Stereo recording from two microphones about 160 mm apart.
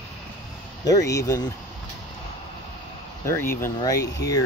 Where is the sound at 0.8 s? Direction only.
20° left (ahead or behind).